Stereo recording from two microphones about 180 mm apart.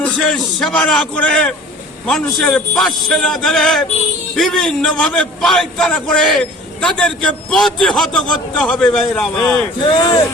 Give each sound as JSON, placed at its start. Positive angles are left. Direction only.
{"t": 0.0, "sound": "a man's voice", "side_deg": 5}
{"t": 9.8, "sound": "speech", "side_deg": 25}